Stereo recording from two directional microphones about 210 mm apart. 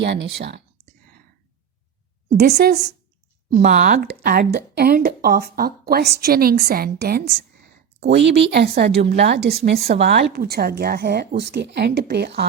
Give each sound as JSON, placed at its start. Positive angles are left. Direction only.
{"t": 0.0, "sound": "speech", "side_deg": -55}
{"t": 2.4, "sound": "a woman's voice", "side_deg": -50}
{"t": 8.1, "sound": "a woman's voice", "side_deg": -55}